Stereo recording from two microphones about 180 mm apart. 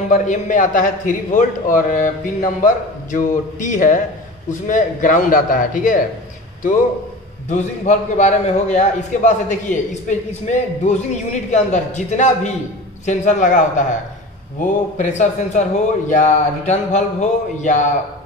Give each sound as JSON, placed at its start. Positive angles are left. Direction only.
{"t": 0.1, "sound": "a man's voice", "side_deg": 45}
{"t": 7.4, "sound": "a man's voice", "side_deg": 40}